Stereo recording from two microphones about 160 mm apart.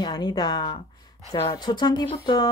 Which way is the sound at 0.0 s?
25° left (ahead or behind).